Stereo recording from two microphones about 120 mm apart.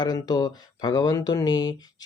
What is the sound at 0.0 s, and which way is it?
Speech, 35° left (ahead or behind).